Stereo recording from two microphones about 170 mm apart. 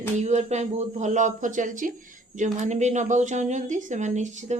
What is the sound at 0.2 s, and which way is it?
Speech, 40° right (ahead or behind).